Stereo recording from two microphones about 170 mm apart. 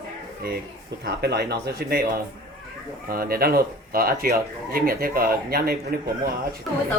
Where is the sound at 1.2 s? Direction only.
75° right (ahead or behind).